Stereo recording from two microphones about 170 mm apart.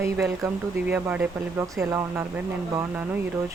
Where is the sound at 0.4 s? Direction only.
10° right (ahead or behind).